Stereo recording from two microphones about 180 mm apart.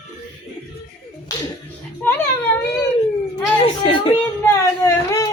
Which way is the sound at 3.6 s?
30° left (ahead or behind).